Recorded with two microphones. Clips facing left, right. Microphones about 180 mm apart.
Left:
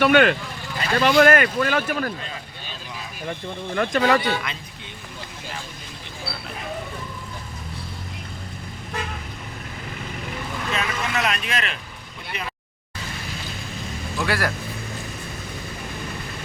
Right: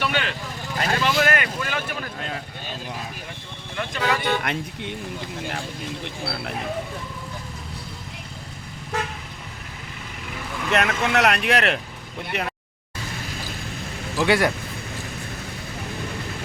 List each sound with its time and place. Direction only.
0.0 s speech: 55° left (ahead or behind)
3.8 s speech: 45° left (ahead or behind)
4.2 s speech: 65° right (ahead or behind)
10.7 s speech: 70° right (ahead or behind)
14.2 s a man's voice: 20° right (ahead or behind)